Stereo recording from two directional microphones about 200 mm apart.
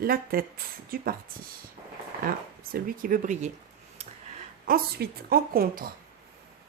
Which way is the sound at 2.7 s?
45° right (ahead or behind).